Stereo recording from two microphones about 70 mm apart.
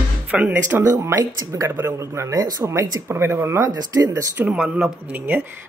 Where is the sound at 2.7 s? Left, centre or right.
Right.